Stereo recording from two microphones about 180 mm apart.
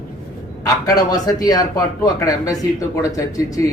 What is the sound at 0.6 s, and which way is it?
Speech, 20° left (ahead or behind).